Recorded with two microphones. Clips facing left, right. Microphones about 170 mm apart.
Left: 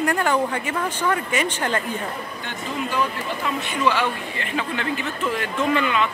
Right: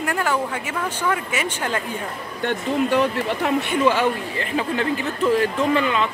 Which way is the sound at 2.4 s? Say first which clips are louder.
Right 9 dB; 65° right (ahead or behind).